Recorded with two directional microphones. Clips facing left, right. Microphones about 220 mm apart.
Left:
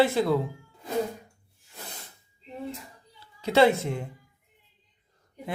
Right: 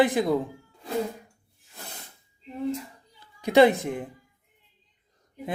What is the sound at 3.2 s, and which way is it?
Speech, 15° right (ahead or behind).